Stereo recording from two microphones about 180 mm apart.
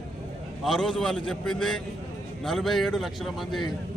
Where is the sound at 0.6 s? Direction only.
Centre (ahead or behind).